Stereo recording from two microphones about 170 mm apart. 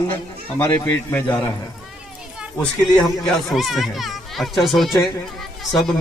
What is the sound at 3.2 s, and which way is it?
A man's voice, centre (ahead or behind).